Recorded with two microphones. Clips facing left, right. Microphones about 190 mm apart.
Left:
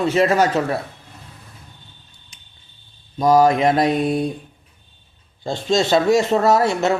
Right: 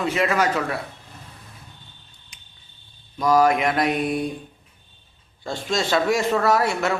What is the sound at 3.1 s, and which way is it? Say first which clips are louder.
Speech: left 4 dB; 25° left (ahead or behind).